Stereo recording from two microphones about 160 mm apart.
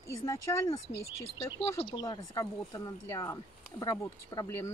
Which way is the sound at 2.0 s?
20° left (ahead or behind).